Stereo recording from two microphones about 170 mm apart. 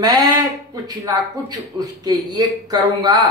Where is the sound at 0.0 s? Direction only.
20° right (ahead or behind).